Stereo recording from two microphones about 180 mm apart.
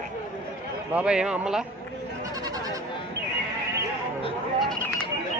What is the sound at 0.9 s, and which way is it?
Speech, 5° right (ahead or behind).